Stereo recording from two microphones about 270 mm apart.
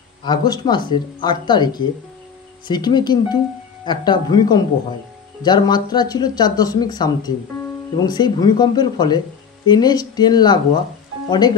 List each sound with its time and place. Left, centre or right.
0.2 s speech: centre